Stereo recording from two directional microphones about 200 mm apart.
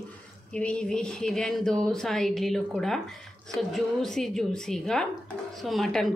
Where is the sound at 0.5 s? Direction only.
5° left (ahead or behind).